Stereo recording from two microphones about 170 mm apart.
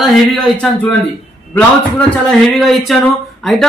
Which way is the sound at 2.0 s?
Centre (ahead or behind).